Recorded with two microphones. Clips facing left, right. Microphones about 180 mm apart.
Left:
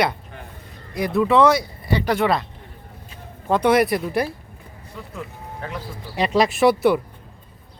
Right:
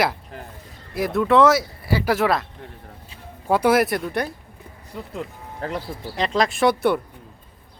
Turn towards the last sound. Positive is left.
turn(degrees=5)  # may be behind; listen again after turning